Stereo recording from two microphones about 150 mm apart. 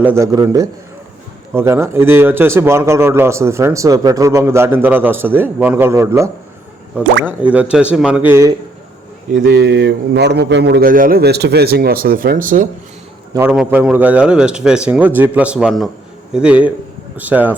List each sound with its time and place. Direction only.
0.0 s a man's voice: 20° right (ahead or behind)
9.3 s a man's voice: 90° right; by 12.6 s 65° right (ahead or behind)
13.3 s a man's voice: 15° right (ahead or behind)